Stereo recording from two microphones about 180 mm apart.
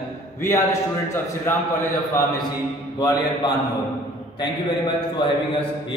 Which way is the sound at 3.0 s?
25° left (ahead or behind).